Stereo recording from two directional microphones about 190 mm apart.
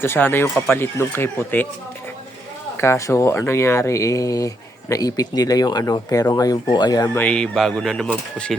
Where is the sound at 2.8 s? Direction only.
15° left (ahead or behind).